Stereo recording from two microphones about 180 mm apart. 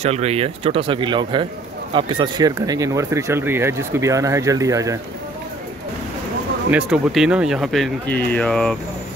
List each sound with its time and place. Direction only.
0.0 s a man's voice: 35° right (ahead or behind); by 4.9 s 20° right (ahead or behind)
6.7 s speech: centre (ahead or behind)